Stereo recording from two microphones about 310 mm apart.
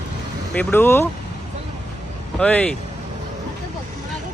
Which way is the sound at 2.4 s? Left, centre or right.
Centre.